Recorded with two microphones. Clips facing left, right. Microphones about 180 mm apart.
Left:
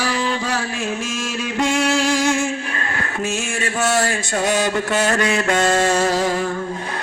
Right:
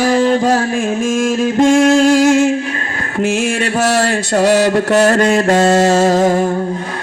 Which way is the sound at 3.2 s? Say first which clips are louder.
Right 10 dB; 60° right (ahead or behind).